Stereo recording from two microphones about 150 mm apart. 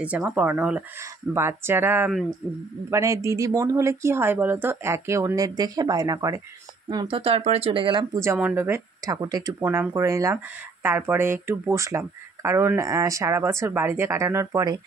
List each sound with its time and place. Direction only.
0.0 s speech: 10° right (ahead or behind); by 8.2 s 30° right (ahead or behind)
8.2 s speech: 15° right (ahead or behind)